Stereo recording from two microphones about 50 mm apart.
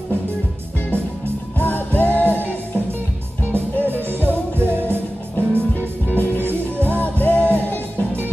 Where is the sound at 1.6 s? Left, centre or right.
Left.